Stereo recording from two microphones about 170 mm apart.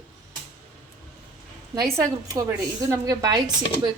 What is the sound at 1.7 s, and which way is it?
A woman's voice, 20° right (ahead or behind).